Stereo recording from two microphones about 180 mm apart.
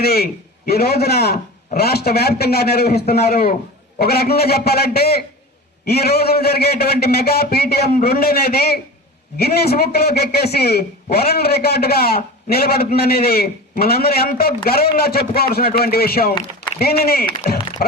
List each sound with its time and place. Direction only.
0.0 s a man's voice: 60° left (ahead or behind)